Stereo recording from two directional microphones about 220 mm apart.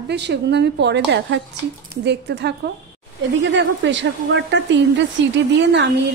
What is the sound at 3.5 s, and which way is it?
A woman's voice, 55° right (ahead or behind).